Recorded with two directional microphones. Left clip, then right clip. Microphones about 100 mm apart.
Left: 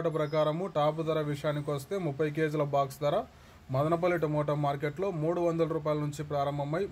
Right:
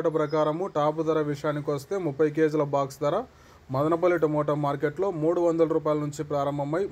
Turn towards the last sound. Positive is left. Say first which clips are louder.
# right 5 dB
turn(degrees=-25)  # may be behind; listen again after turning